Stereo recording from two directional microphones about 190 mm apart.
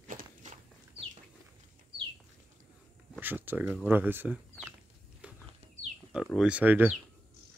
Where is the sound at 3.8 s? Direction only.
10° right (ahead or behind).